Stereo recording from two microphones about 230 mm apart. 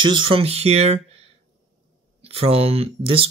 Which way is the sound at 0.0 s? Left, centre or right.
Centre.